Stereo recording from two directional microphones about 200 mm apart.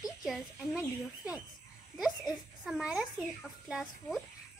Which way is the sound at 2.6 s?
5° right (ahead or behind).